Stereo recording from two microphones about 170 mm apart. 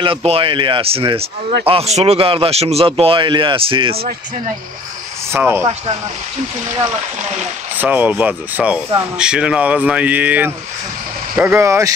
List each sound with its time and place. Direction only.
0.0 s speech: 35° right (ahead or behind)
5.3 s speech: 15° right (ahead or behind)
7.7 s speech: 10° right (ahead or behind)